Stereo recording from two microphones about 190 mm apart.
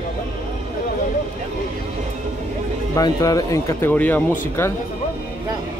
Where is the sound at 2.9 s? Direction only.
20° left (ahead or behind).